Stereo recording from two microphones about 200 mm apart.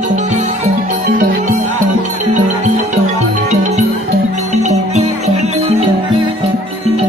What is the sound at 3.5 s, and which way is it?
Music, 35° right (ahead or behind).